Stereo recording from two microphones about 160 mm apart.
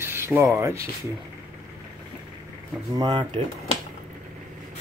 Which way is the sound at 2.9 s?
30° right (ahead or behind).